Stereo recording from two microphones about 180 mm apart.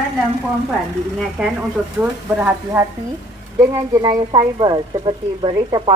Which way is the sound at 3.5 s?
20° right (ahead or behind).